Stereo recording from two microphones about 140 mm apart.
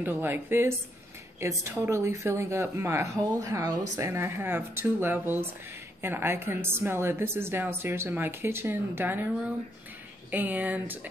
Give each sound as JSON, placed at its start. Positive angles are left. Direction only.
{"t": 0.0, "sound": "a woman's voice", "side_deg": -15}
{"t": 10.3, "sound": "a woman's voice", "side_deg": -10}